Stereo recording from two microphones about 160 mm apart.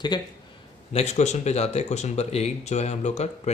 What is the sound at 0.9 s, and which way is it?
Speech, 45° left (ahead or behind).